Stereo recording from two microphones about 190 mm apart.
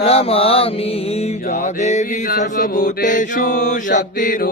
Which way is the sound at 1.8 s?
35° left (ahead or behind).